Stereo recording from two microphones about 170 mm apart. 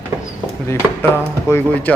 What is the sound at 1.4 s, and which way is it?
Speech, 10° left (ahead or behind).